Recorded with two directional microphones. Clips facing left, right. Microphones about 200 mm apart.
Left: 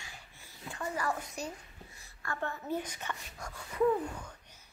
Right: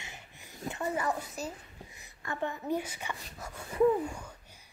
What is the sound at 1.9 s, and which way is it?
Speech, 20° right (ahead or behind).